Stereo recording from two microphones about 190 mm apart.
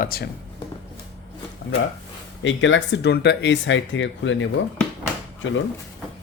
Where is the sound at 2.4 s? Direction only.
75° left (ahead or behind).